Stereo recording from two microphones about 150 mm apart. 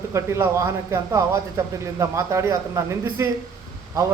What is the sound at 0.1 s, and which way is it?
A man's voice, 20° right (ahead or behind).